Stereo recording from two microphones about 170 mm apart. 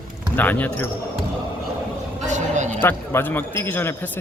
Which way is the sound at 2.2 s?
45° right (ahead or behind).